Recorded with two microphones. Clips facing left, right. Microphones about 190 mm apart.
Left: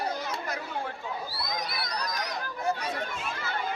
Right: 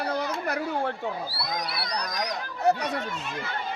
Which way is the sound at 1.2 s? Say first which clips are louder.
Right 2 dB; 35° right (ahead or behind).